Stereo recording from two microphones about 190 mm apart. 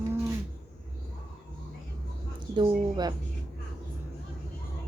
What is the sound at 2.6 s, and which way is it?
Speech, 20° right (ahead or behind).